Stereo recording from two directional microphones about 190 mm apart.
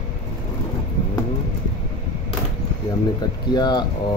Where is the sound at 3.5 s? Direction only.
20° left (ahead or behind).